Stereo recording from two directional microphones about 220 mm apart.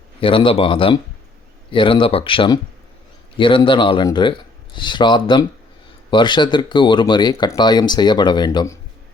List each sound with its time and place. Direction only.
0.2 s speech: 25° left (ahead or behind)